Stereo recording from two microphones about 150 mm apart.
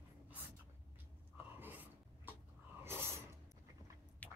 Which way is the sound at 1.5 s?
10° right (ahead or behind).